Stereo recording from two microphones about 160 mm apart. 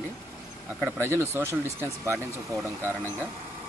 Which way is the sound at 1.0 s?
15° right (ahead or behind).